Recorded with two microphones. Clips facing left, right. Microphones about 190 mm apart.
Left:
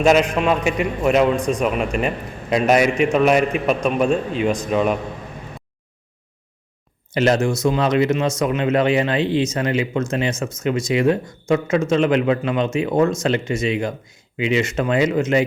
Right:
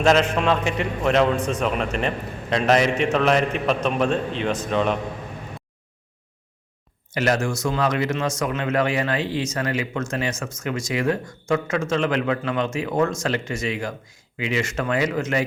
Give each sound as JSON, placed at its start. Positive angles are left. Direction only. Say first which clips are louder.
{"t": 0.0, "sound": "a man's voice", "louder": "left 3 dB", "side_deg": 15}
{"t": 7.1, "sound": "speech", "louder": "left 5 dB", "side_deg": 25}